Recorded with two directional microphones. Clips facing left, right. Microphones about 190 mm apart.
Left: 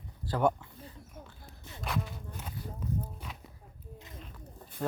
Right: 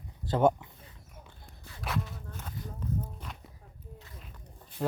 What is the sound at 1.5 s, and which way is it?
Zipper, centre (ahead or behind).